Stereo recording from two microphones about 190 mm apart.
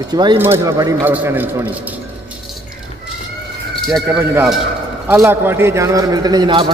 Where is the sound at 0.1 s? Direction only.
25° right (ahead or behind).